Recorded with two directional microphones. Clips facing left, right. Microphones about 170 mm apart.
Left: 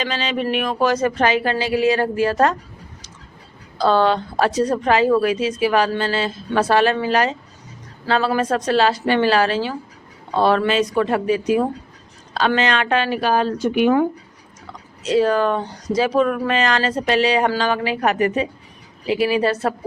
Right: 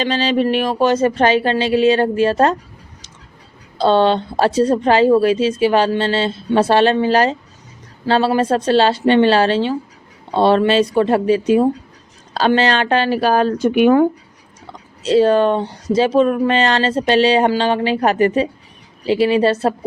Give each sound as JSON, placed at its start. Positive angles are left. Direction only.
{"t": 0.0, "sound": "speech", "side_deg": -35}
{"t": 3.8, "sound": "speech", "side_deg": -25}
{"t": 15.0, "sound": "speech", "side_deg": -30}